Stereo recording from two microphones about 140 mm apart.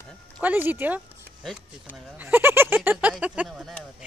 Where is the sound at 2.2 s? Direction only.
15° right (ahead or behind).